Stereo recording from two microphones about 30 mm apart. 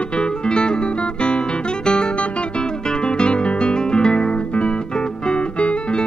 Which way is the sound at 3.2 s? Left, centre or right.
Left.